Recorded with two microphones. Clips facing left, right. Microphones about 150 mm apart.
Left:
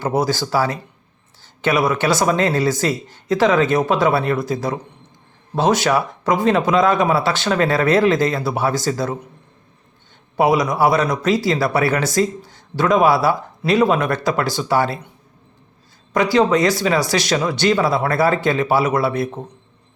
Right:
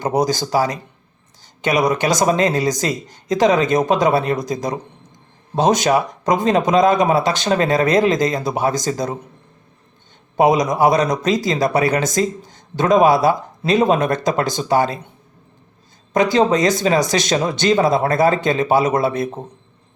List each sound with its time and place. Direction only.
0.0 s speech: 15° right (ahead or behind)
10.3 s speech: 20° right (ahead or behind)
16.1 s speech: 20° right (ahead or behind)